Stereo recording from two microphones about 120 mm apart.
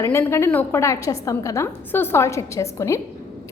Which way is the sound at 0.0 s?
20° left (ahead or behind).